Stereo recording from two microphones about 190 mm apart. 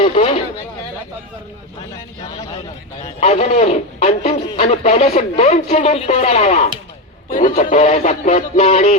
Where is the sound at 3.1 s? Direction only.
35° left (ahead or behind).